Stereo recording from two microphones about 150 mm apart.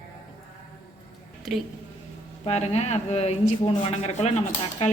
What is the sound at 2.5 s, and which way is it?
Speech, 45° left (ahead or behind).